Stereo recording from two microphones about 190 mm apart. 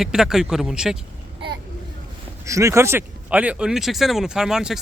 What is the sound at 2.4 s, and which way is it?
Speech, 15° right (ahead or behind).